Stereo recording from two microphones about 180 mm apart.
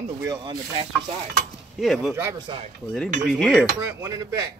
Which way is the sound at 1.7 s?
Centre (ahead or behind).